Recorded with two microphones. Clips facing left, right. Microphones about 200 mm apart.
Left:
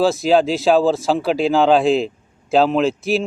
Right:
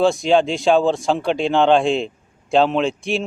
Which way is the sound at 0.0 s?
5° left (ahead or behind).